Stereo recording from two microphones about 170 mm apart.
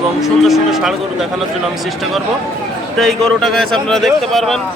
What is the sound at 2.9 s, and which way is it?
Speech, centre (ahead or behind).